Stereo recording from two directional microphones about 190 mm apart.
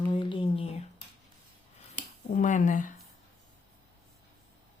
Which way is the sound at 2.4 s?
40° left (ahead or behind).